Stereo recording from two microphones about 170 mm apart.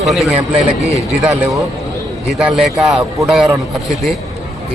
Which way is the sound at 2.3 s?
5° right (ahead or behind).